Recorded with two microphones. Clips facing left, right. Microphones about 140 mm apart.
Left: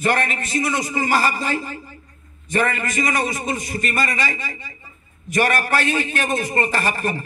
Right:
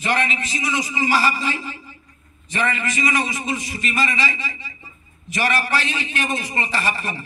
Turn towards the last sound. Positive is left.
turn(degrees=50)  # may be behind; listen again after turning